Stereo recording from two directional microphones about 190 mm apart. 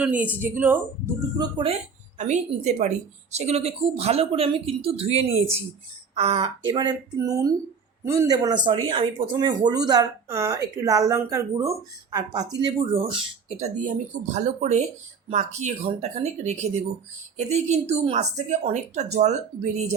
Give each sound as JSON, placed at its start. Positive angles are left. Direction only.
{"t": 0.0, "sound": "speech", "side_deg": -5}
{"t": 1.4, "sound": "speech", "side_deg": -30}
{"t": 13.8, "sound": "speech", "side_deg": -40}